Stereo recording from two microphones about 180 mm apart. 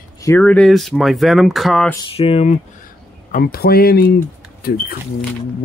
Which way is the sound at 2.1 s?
30° left (ahead or behind).